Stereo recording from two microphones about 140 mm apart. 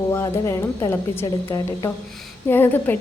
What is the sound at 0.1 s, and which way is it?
A woman's voice, 20° left (ahead or behind).